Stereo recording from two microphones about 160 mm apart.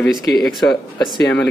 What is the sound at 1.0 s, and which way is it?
Speech, 30° left (ahead or behind).